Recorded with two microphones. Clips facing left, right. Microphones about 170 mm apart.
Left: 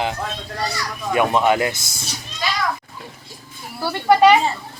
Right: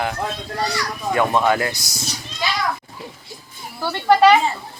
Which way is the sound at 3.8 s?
10° left (ahead or behind).